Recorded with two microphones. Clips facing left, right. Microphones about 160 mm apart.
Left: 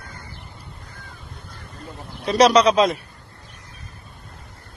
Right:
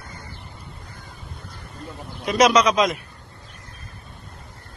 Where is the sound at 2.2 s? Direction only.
35° left (ahead or behind).